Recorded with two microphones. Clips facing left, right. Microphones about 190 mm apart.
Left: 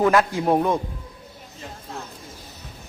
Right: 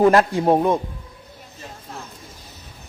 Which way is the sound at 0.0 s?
35° right (ahead or behind).